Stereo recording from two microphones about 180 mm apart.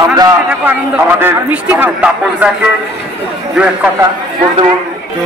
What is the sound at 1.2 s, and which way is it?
A man's voice, 10° right (ahead or behind).